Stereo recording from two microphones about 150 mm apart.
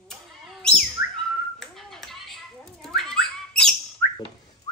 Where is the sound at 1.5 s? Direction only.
Centre (ahead or behind).